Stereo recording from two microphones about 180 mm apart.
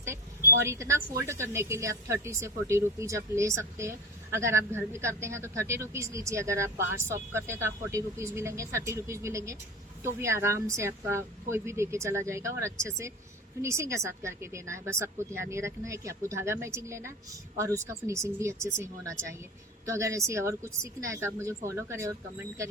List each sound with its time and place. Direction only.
0.6 s a woman's voice: 15° right (ahead or behind)